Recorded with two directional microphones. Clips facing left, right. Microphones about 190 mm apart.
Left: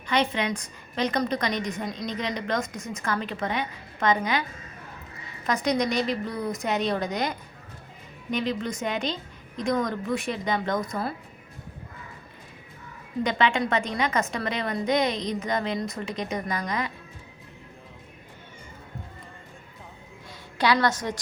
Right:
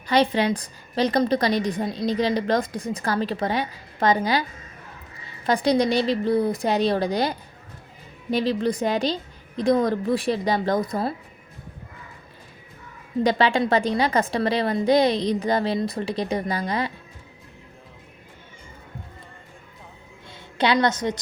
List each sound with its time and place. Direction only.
0.1 s a woman's voice: 35° right (ahead or behind)
13.2 s a woman's voice: 35° right (ahead or behind)
20.6 s a woman's voice: 20° right (ahead or behind)